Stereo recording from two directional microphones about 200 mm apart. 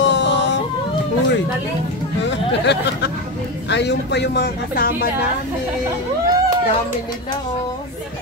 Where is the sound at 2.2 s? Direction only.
60° left (ahead or behind).